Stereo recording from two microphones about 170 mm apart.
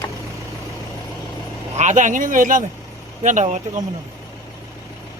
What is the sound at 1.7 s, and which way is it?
Speech, 45° right (ahead or behind).